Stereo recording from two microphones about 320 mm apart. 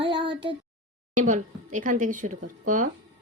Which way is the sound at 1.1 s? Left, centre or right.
Right.